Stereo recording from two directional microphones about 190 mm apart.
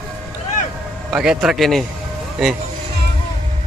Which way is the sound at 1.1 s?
5° right (ahead or behind).